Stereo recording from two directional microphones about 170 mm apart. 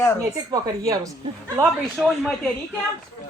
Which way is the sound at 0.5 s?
20° right (ahead or behind).